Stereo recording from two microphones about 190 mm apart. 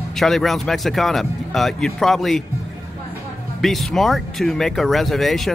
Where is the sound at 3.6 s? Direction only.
Centre (ahead or behind).